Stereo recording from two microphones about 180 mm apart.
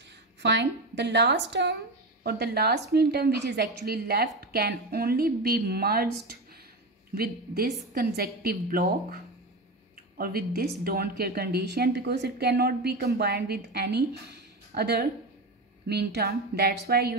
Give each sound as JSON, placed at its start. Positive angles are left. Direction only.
{"t": 0.4, "sound": "a woman's voice", "side_deg": -75}
{"t": 7.2, "sound": "a woman's voice", "side_deg": -55}